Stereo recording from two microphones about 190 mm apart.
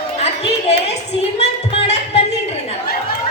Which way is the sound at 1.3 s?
35° left (ahead or behind).